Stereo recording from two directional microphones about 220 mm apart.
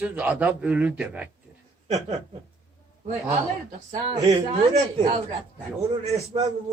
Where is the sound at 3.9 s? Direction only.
30° right (ahead or behind).